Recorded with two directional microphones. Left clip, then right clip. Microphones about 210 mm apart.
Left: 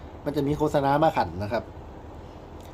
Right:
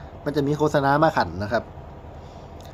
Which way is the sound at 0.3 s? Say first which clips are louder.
Right 3 dB; 15° left (ahead or behind).